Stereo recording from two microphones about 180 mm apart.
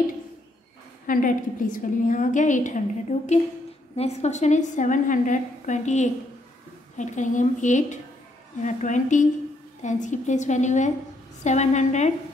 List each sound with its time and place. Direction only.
1.0 s a woman's voice: 50° left (ahead or behind)